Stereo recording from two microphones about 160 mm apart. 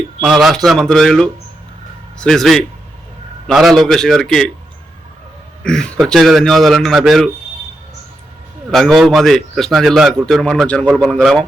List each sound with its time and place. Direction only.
0.2 s a man's voice: centre (ahead or behind)
5.6 s a man's voice: 5° left (ahead or behind)
8.7 s a man's voice: centre (ahead or behind)